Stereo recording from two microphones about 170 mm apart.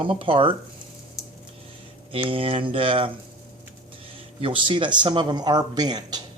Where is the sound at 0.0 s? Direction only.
30° right (ahead or behind).